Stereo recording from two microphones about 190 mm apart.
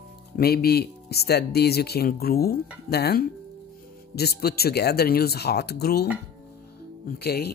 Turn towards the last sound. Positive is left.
turn(degrees=55)  # may be behind; listen again after turning